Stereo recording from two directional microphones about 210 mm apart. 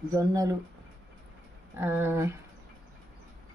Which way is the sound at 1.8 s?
10° right (ahead or behind).